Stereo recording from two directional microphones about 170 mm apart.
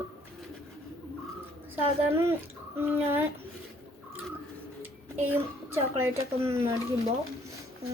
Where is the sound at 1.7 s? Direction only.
15° right (ahead or behind).